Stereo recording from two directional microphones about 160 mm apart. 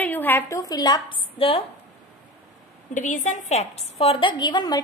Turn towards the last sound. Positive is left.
turn(degrees=25)  # may be behind; listen again after turning